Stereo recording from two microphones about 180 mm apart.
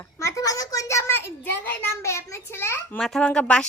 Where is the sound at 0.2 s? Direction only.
15° left (ahead or behind).